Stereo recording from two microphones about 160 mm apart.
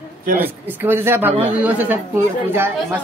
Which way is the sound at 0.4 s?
10° right (ahead or behind).